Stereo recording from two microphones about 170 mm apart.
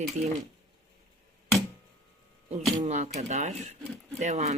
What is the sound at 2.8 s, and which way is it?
Speech, 40° right (ahead or behind).